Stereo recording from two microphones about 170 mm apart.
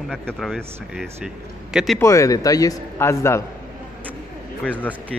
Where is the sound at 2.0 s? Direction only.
20° left (ahead or behind).